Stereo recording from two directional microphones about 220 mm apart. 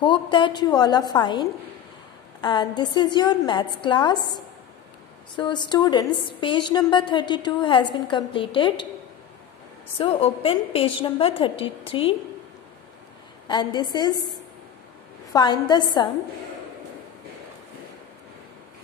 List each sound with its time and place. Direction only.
0.0 s a woman's voice: 20° left (ahead or behind)
9.9 s a woman's voice: 25° left (ahead or behind)
13.5 s a woman's voice: 20° left (ahead or behind)
15.3 s a woman's voice: 20° left (ahead or behind)